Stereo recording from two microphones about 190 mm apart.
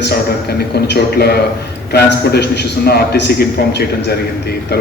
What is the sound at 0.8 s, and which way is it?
A man's voice, 60° left (ahead or behind).